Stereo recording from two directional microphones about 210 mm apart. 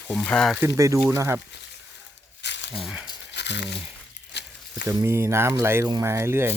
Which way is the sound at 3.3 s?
55° left (ahead or behind).